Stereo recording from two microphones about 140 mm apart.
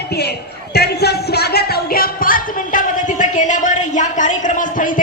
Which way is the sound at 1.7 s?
90° left.